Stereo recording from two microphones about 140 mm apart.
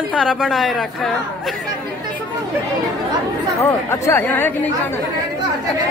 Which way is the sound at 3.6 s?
20° left (ahead or behind).